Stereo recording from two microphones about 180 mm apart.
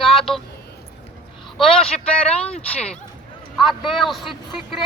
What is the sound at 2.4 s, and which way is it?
A man's voice, 5° left (ahead or behind).